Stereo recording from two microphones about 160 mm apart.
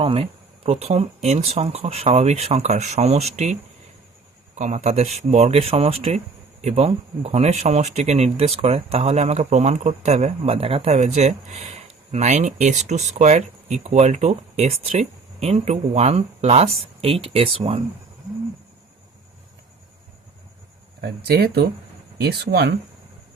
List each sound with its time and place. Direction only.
0.0 s speech: 35° right (ahead or behind)
21.0 s speech: 80° right